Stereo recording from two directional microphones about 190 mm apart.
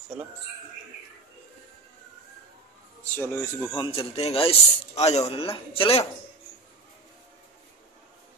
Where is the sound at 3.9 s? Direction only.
30° left (ahead or behind).